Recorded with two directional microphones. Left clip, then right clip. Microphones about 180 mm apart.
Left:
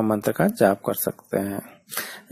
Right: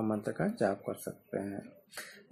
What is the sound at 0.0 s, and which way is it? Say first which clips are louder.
Speech: left 12 dB; 35° left (ahead or behind).